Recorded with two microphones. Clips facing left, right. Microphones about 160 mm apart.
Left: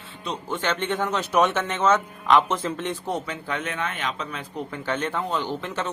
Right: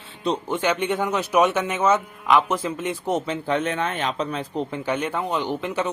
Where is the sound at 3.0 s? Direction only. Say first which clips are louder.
Right 5 dB; 20° right (ahead or behind).